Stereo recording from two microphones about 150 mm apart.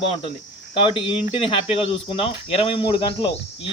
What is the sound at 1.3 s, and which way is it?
Speech, 40° left (ahead or behind).